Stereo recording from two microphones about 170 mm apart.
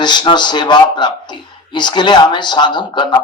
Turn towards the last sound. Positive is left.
turn(degrees=25)  # may be behind; listen again after turning